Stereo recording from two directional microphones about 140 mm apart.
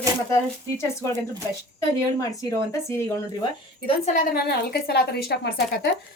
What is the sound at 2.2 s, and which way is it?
Speech, 25° left (ahead or behind).